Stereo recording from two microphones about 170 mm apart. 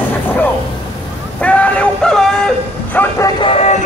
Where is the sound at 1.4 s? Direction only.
10° left (ahead or behind).